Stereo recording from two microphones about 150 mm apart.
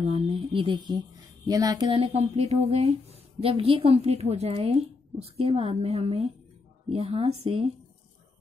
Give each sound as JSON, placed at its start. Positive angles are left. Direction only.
{"t": 0.1, "sound": "a woman's voice", "side_deg": -35}
{"t": 1.9, "sound": "a woman's voice", "side_deg": -40}